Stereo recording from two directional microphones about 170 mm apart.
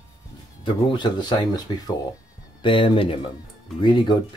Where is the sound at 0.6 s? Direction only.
25° left (ahead or behind).